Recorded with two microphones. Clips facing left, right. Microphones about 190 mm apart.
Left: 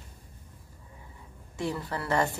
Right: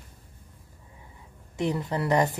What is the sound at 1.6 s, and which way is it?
Speech, 20° right (ahead or behind).